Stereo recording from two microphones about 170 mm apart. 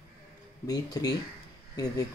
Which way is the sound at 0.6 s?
20° left (ahead or behind).